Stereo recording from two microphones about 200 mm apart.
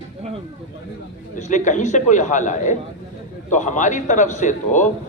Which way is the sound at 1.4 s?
35° left (ahead or behind).